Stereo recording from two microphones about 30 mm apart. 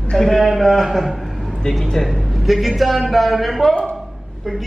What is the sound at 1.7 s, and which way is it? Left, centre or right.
Speech, left.